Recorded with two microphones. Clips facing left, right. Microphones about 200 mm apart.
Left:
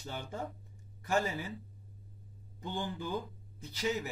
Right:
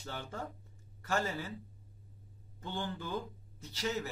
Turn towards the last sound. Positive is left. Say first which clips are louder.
# left 2 dB
turn(degrees=15)  # may be behind; listen again after turning